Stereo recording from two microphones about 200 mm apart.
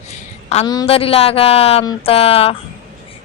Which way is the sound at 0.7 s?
25° left (ahead or behind).